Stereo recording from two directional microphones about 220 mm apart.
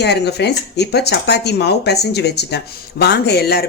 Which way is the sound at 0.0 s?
50° left (ahead or behind).